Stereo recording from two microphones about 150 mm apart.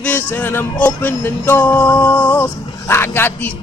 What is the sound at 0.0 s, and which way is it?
Music, 10° left (ahead or behind).